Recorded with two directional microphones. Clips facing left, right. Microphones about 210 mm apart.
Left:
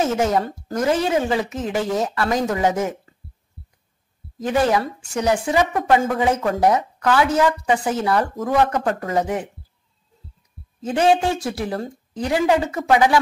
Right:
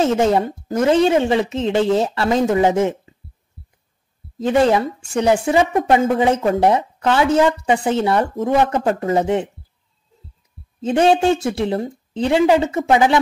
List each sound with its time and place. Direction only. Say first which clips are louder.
0.0 s speech: right 4 dB; 25° right (ahead or behind)
3.6 s heart sounds: even; centre (ahead or behind)
4.4 s speech: right 4 dB; 25° right (ahead or behind)
10.8 s speech: right 3 dB; 25° right (ahead or behind)